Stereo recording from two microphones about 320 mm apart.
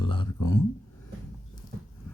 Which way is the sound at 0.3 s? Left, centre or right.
Left.